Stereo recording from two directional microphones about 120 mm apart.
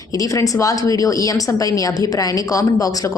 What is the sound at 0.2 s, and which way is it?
A woman's voice, 30° left (ahead or behind).